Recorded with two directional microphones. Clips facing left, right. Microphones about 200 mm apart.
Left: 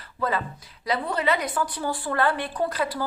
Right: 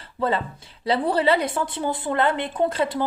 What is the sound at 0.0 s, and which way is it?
A woman's voice, 25° right (ahead or behind).